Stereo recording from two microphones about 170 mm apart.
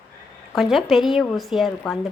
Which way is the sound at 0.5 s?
Centre (ahead or behind).